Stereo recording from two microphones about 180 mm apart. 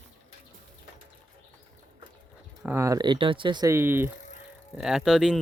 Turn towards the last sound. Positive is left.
turn(degrees=-5)  # may be behind; listen again after turning